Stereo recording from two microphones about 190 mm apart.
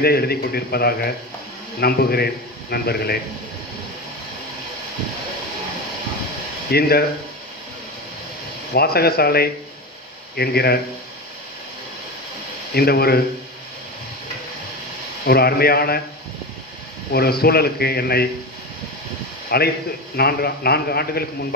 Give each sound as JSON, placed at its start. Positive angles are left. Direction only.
{"t": 0.0, "sound": "a man's voice", "side_deg": 55}
{"t": 6.7, "sound": "a man's voice", "side_deg": 55}
{"t": 8.7, "sound": "a man's voice", "side_deg": 55}
{"t": 12.7, "sound": "a man's voice", "side_deg": 55}
{"t": 15.2, "sound": "a man's voice", "side_deg": 55}
{"t": 17.1, "sound": "a man's voice", "side_deg": 55}
{"t": 19.5, "sound": "a man's voice", "side_deg": 55}